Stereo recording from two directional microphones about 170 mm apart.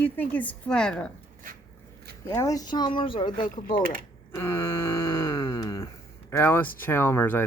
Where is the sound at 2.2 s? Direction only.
15° left (ahead or behind).